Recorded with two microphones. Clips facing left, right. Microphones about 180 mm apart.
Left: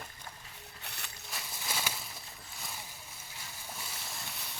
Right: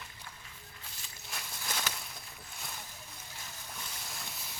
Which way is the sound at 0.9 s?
65° left (ahead or behind).